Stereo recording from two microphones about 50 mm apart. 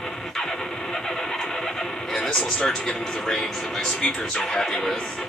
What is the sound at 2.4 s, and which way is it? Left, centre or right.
Speech, left.